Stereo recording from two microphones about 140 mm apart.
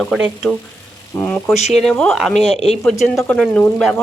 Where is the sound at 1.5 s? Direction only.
50° left (ahead or behind).